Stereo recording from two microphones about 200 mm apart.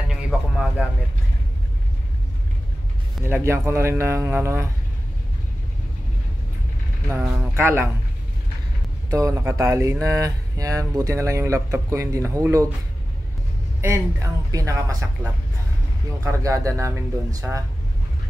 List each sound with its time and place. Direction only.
0.1 s a sound: centre (ahead or behind)
3.2 s speech: 10° right (ahead or behind)
7.1 s speech: 10° right (ahead or behind)
9.1 s speech: 15° right (ahead or behind)
13.7 s speech: 15° right (ahead or behind)
16.3 s speech: 15° right (ahead or behind)